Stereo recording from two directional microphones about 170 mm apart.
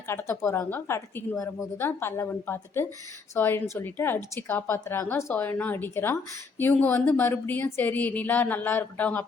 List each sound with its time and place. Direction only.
0.1 s a woman's voice: 15° left (ahead or behind)